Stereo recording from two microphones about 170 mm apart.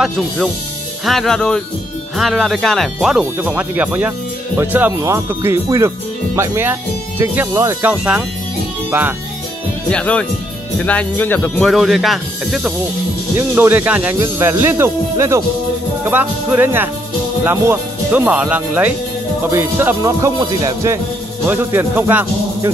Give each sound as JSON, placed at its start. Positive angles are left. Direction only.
{"t": 1.0, "sound": "speech", "side_deg": 0}
{"t": 9.8, "sound": "speech", "side_deg": 5}
{"t": 13.4, "sound": "speech", "side_deg": -10}